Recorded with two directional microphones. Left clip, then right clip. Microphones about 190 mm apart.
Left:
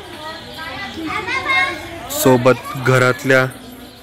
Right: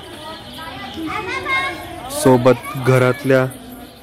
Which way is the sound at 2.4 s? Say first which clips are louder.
Even; 10° right (ahead or behind).